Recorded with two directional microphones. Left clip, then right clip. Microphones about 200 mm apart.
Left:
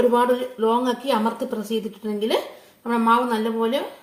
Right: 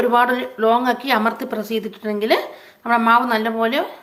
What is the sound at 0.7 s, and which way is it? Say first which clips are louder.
Speech: right 5 dB; 50° right (ahead or behind).